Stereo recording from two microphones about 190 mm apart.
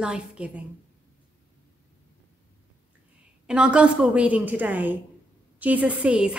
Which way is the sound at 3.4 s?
5° right (ahead or behind).